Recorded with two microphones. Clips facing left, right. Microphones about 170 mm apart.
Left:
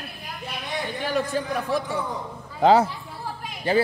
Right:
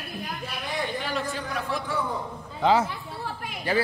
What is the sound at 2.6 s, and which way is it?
Speech, 40° left (ahead or behind).